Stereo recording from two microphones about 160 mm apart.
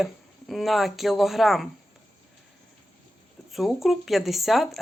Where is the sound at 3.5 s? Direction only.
Centre (ahead or behind).